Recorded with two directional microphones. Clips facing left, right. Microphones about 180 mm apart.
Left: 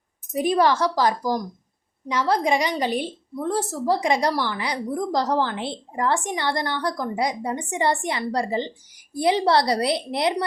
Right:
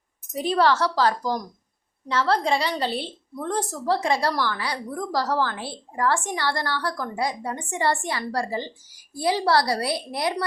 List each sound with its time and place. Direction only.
0.3 s a woman's voice: 15° left (ahead or behind)